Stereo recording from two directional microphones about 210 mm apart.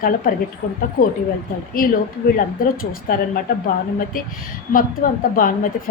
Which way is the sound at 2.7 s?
45° left (ahead or behind).